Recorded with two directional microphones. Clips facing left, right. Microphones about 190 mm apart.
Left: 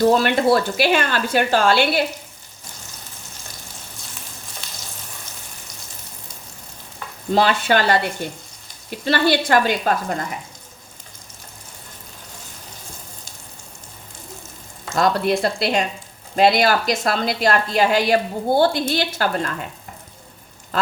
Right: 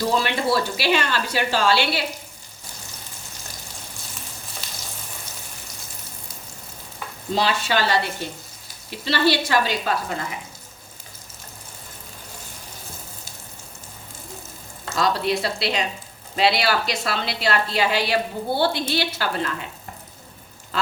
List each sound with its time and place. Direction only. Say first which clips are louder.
0.0 s a woman's voice: left 7 dB; 50° left (ahead or behind)
7.3 s a woman's voice: left 5 dB; 50° left (ahead or behind)
14.9 s a woman's voice: left 4 dB; 50° left (ahead or behind)